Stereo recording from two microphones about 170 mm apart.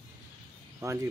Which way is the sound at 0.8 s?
15° right (ahead or behind).